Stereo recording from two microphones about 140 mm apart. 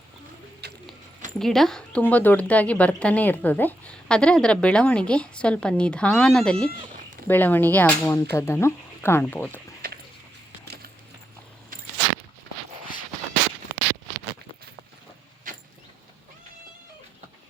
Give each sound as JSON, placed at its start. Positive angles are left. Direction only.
{"t": 1.4, "sound": "a woman's voice", "side_deg": 5}
{"t": 15.5, "sound": "vehicle", "side_deg": -70}